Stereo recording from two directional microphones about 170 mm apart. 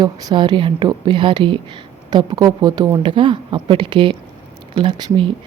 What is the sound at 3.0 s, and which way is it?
Speech, 30° right (ahead or behind).